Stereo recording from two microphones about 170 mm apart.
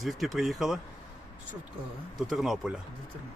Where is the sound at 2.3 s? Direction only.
Centre (ahead or behind).